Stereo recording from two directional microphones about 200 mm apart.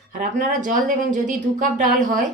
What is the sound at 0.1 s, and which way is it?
A woman's voice, 40° right (ahead or behind).